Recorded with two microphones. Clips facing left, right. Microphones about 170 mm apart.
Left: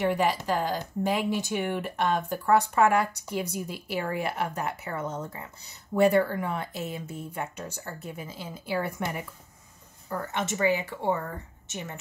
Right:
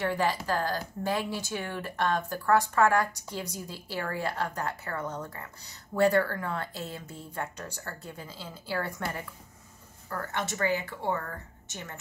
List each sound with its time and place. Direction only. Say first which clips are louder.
0.0 s speech: left 3 dB; 20° left (ahead or behind)